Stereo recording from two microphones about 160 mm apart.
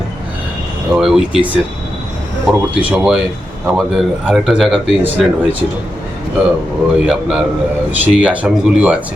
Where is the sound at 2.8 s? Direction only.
5° right (ahead or behind).